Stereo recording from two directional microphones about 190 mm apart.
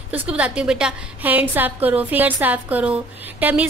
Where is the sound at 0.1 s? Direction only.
5° right (ahead or behind).